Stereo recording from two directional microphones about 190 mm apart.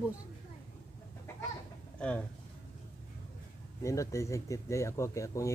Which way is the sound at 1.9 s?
5° left (ahead or behind).